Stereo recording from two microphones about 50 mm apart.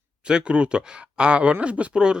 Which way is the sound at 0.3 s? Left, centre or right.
Centre.